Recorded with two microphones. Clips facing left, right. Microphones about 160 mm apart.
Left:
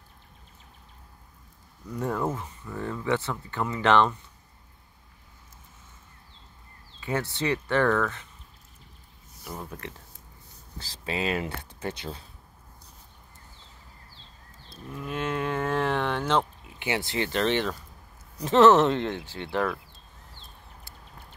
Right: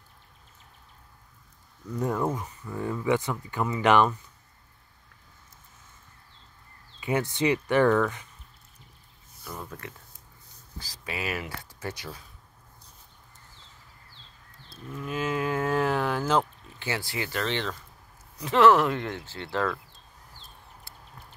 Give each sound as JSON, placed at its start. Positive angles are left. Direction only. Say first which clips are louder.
{"t": 2.0, "sound": "speech", "louder": "right 1 dB", "side_deg": -5}
{"t": 7.0, "sound": "speech", "louder": "right 3 dB", "side_deg": -15}
{"t": 10.9, "sound": "speech", "louder": "left 4 dB", "side_deg": 25}
{"t": 15.0, "sound": "speech", "louder": "right 1 dB", "side_deg": 0}
{"t": 16.6, "sound": "speech", "louder": "left 3 dB", "side_deg": 15}